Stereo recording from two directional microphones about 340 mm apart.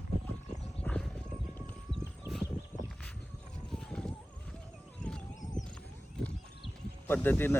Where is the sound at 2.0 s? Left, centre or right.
Centre.